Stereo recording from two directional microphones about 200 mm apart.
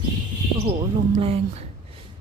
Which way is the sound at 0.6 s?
30° right (ahead or behind).